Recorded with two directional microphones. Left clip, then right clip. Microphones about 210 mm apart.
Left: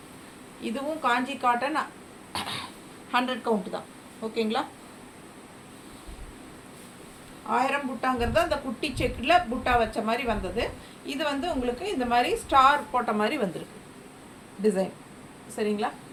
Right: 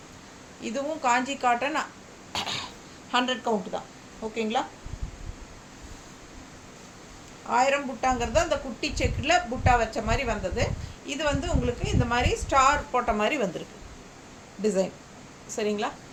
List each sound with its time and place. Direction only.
0.6 s a woman's voice: 25° right (ahead or behind)
2.3 s cough: 30° right (ahead or behind)
3.1 s a woman's voice: 25° right (ahead or behind)
7.5 s a woman's voice: 20° right (ahead or behind)
14.6 s a woman's voice: 35° right (ahead or behind)